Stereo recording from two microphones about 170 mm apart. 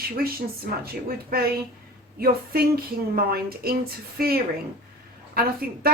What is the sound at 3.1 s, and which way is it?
A woman's voice, 60° right (ahead or behind).